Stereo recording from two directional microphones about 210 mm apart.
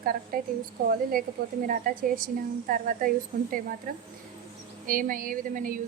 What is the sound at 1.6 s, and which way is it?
Speech, 40° right (ahead or behind).